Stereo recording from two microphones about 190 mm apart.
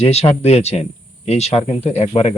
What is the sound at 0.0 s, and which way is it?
Speech, 35° left (ahead or behind).